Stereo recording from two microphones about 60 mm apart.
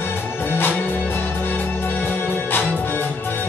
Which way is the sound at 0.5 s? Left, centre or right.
Left.